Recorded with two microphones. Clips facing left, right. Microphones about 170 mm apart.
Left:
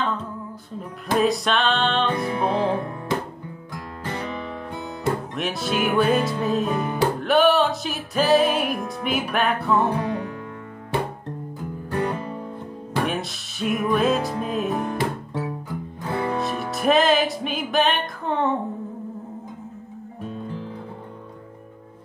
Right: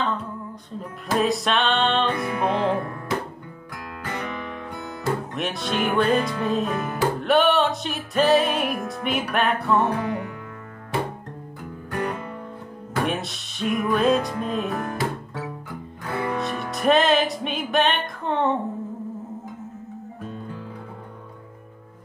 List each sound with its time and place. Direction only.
1.1 s music: centre (ahead or behind)
2.1 s music: 25° left (ahead or behind)
4.0 s guitar: 30° left (ahead or behind)
5.3 s music: centre (ahead or behind)
11.9 s music: 30° left (ahead or behind)
12.9 s music: centre (ahead or behind)
14.7 s music: 20° left (ahead or behind)
16.0 s music: 30° left (ahead or behind)
16.3 s music: centre (ahead or behind)